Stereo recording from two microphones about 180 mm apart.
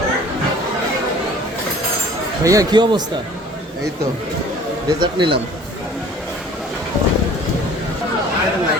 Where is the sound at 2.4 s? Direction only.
20° right (ahead or behind).